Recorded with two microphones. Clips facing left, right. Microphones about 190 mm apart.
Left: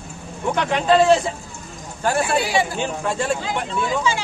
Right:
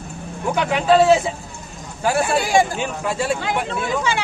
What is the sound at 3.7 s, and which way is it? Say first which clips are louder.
Speech: even; 60° right (ahead or behind).